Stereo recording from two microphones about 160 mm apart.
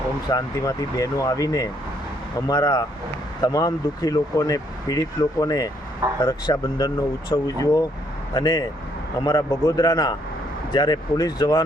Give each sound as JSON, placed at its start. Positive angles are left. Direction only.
{"t": 0.3, "sound": "speech", "side_deg": 20}